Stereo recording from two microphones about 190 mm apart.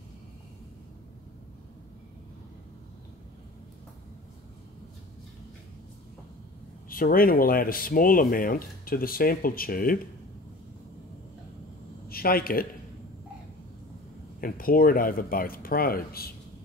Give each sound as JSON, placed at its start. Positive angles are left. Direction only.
{"t": 6.9, "sound": "speech", "side_deg": 50}
{"t": 12.1, "sound": "speech", "side_deg": 50}
{"t": 14.4, "sound": "speech", "side_deg": 50}